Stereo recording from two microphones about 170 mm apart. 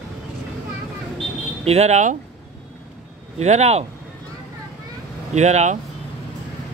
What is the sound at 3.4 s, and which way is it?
Speech, 40° right (ahead or behind).